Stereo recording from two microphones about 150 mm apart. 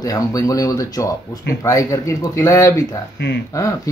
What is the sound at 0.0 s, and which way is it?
Speech, 25° left (ahead or behind).